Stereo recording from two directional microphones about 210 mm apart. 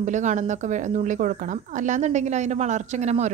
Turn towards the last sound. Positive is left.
turn(degrees=-30)  # may be behind; listen again after turning